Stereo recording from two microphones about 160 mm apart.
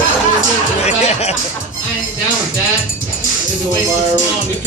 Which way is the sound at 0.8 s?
45° left (ahead or behind).